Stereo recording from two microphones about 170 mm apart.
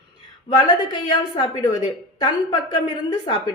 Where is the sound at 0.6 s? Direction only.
25° left (ahead or behind).